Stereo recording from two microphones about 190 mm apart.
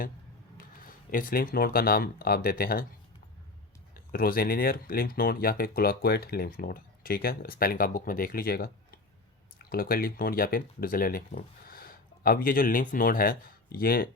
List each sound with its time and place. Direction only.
1.1 s speech: 50° left (ahead or behind)
3.9 s speech: 50° left (ahead or behind)